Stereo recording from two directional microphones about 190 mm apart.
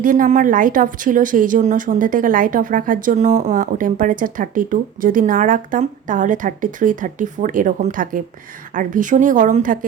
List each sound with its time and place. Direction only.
0.0 s speech: 45° right (ahead or behind)